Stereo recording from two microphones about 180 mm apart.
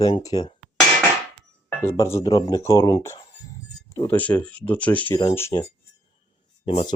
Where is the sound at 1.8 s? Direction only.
15° left (ahead or behind).